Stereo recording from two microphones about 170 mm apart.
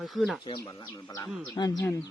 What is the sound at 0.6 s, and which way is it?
Speech, 25° left (ahead or behind).